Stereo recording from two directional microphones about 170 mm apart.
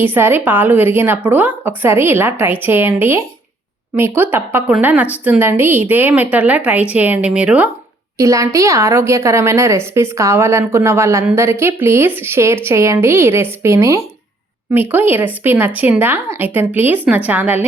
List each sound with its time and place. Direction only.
0.0 s a woman's voice: 10° right (ahead or behind)
8.2 s a woman's voice: 20° right (ahead or behind)